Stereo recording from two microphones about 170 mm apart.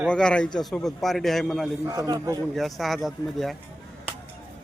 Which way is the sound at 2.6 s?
Centre (ahead or behind).